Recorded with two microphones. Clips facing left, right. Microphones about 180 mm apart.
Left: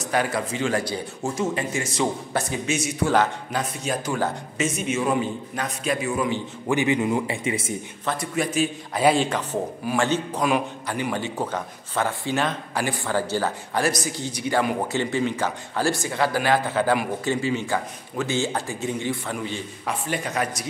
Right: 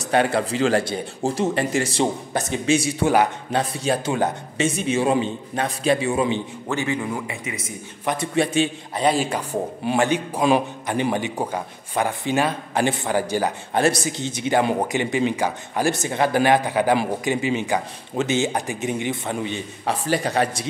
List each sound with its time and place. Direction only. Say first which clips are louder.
0.1 s a man's voice: right 5 dB; 30° right (ahead or behind)
6.7 s speech: left 4 dB; 15° left (ahead or behind)
8.0 s a man's voice: right 5 dB; 15° right (ahead or behind)
8.4 s a man's voice: right 4 dB; 30° right (ahead or behind)
8.9 s speech: left 1 dB; 5° left (ahead or behind)
9.2 s a man's voice: right 1 dB; 10° right (ahead or behind)
10.4 s a man's voice: right 7 dB; 25° right (ahead or behind)
19.9 s a man's voice: right 5 dB; 35° right (ahead or behind)